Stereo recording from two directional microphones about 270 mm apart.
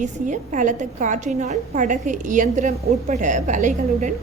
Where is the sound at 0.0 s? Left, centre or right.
Right.